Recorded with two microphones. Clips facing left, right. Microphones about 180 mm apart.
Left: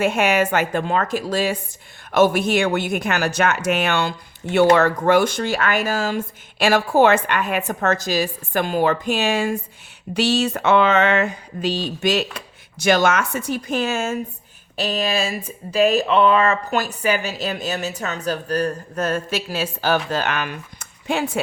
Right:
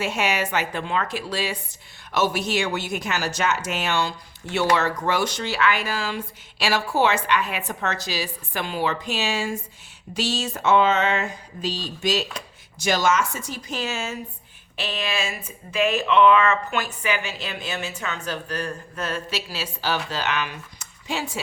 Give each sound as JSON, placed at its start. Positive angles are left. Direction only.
{"t": 0.0, "sound": "speech", "side_deg": 55}